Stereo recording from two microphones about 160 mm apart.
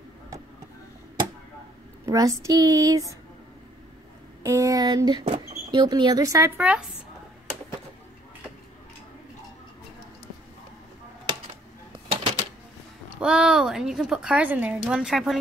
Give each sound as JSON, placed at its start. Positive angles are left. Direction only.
{"t": 2.0, "sound": "speech", "side_deg": -20}
{"t": 4.4, "sound": "speech", "side_deg": -20}
{"t": 5.2, "sound": "speech", "side_deg": -40}
{"t": 5.7, "sound": "speech", "side_deg": -30}
{"t": 12.1, "sound": "typewriter", "side_deg": -40}
{"t": 13.2, "sound": "a woman's voice", "side_deg": -5}